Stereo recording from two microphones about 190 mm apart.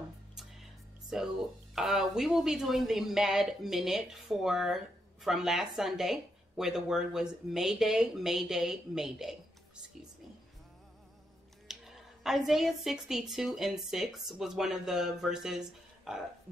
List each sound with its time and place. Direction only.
1.1 s speech: centre (ahead or behind)
11.6 s a woman's voice: centre (ahead or behind)